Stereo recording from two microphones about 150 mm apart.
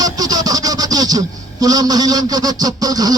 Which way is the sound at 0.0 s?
25° right (ahead or behind).